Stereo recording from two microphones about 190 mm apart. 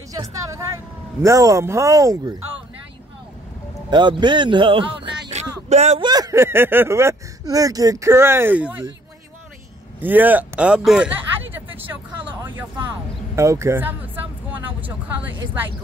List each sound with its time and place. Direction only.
0.1 s vehicle: 15° right (ahead or behind)
1.2 s speech: 15° right (ahead or behind)
3.9 s a man's voice: 25° right (ahead or behind); by 8.8 s 10° right (ahead or behind)
9.9 s speech: 10° right (ahead or behind)
11.5 s vehicle: 10° right (ahead or behind)
13.4 s a sound: 15° right (ahead or behind)